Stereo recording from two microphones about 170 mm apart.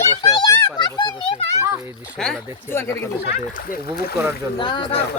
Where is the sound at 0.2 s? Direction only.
20° left (ahead or behind).